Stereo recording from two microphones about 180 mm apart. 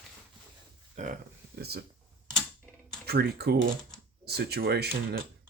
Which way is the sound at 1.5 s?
60° right (ahead or behind).